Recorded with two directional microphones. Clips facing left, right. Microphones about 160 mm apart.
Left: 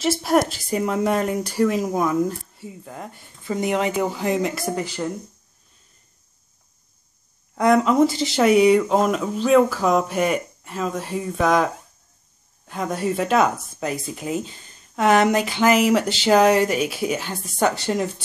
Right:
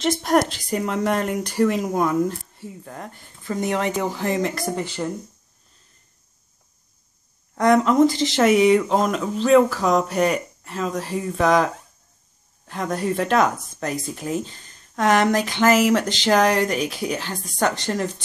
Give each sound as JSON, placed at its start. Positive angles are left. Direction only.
{"t": 0.0, "sound": "speech", "side_deg": 5}
{"t": 7.5, "sound": "speech", "side_deg": 5}